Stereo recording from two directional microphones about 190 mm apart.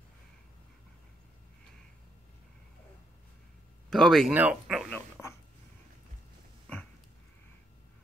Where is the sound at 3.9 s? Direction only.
Centre (ahead or behind).